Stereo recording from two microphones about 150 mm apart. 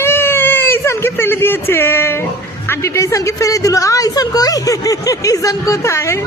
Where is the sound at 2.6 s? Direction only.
15° left (ahead or behind).